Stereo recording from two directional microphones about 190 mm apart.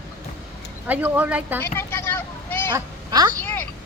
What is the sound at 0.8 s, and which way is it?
Speech, 10° right (ahead or behind).